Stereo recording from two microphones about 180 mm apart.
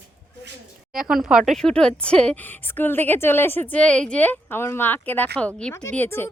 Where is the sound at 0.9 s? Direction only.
Centre (ahead or behind).